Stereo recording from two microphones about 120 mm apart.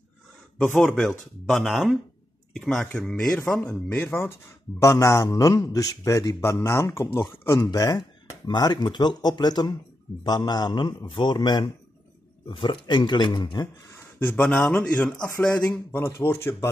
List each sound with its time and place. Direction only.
0.7 s speech: 5° left (ahead or behind)
4.0 s a man's voice: 20° left (ahead or behind)
7.5 s a man's voice: 35° left (ahead or behind)
13.9 s a sound: 15° left (ahead or behind)
14.7 s speech: 10° left (ahead or behind)
15.9 s a man's voice: 20° left (ahead or behind)